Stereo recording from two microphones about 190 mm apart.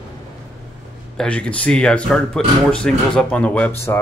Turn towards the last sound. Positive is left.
turn(degrees=10)  # may be behind; listen again after turning